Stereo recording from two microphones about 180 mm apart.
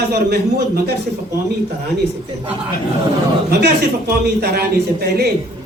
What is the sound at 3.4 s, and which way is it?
A man's voice, 65° right (ahead or behind).